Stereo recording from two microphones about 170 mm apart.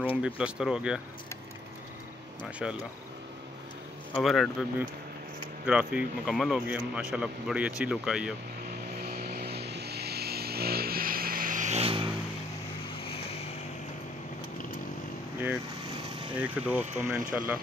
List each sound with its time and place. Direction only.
0.1 s speech: 5° right (ahead or behind)
2.6 s speech: 5° right (ahead or behind)
4.1 s speech: centre (ahead or behind)
8.6 s vehicle: 65° right (ahead or behind); by 12.1 s 35° right (ahead or behind)
13.0 s vehicle: 35° left (ahead or behind)
16.1 s vehicle: 25° right (ahead or behind)
16.3 s speech: 10° right (ahead or behind)
16.8 s speech: 45° right (ahead or behind)
17.3 s speech: 10° right (ahead or behind)